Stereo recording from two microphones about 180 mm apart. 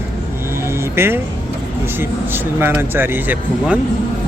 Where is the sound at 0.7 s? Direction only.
15° right (ahead or behind).